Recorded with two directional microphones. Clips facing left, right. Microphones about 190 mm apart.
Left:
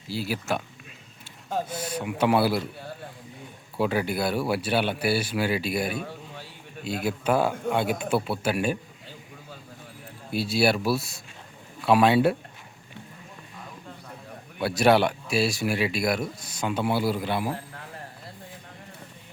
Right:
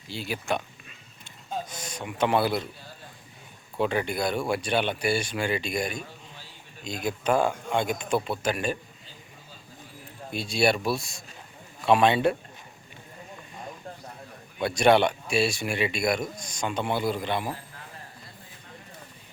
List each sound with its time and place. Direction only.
0.1 s speech: 5° left (ahead or behind)
3.8 s speech: 5° left (ahead or behind)
6.0 s a sound: 60° left (ahead or behind)
7.0 s speech: 5° left (ahead or behind)
10.3 s speech: 5° left (ahead or behind)
14.6 s speech: 5° left (ahead or behind)